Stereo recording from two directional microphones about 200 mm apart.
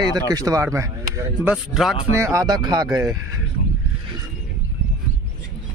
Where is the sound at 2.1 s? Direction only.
15° right (ahead or behind).